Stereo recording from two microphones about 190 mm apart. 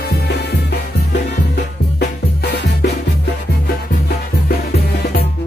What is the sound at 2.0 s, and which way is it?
Music, 60° left (ahead or behind).